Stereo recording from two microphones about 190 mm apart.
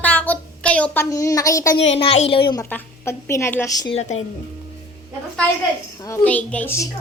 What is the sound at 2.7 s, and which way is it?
A woman's voice, 10° left (ahead or behind).